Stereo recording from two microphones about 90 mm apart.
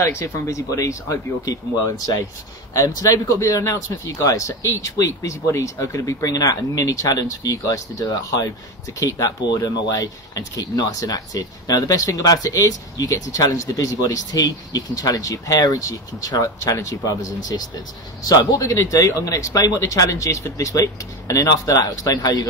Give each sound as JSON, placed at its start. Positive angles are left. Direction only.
{"t": 0.1, "sound": "speech", "side_deg": 35}